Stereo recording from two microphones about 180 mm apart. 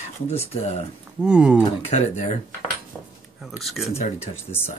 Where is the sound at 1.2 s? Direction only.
5° right (ahead or behind).